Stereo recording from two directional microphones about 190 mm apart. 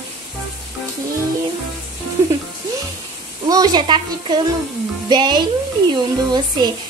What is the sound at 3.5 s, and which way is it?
A woman's voice, 20° right (ahead or behind).